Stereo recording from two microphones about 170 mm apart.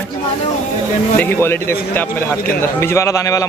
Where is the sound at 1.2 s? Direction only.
10° left (ahead or behind).